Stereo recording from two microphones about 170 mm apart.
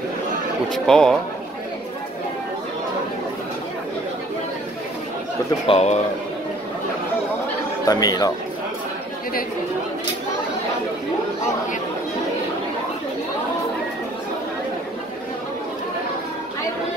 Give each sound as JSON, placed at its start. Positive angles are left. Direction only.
{"t": 0.8, "sound": "speech", "side_deg": 5}
{"t": 5.7, "sound": "speech", "side_deg": 35}
{"t": 7.8, "sound": "speech", "side_deg": 20}